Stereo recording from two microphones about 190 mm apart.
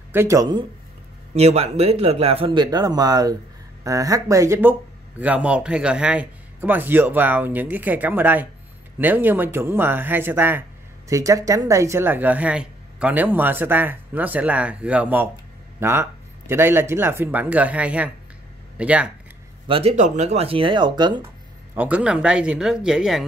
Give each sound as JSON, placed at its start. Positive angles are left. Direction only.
{"t": 0.1, "sound": "speech", "side_deg": -15}
{"t": 1.3, "sound": "speech", "side_deg": -35}
{"t": 19.7, "sound": "speech", "side_deg": -35}
{"t": 21.7, "sound": "speech", "side_deg": -5}